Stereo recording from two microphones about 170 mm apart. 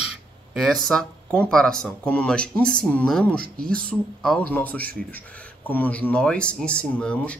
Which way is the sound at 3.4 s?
60° right (ahead or behind).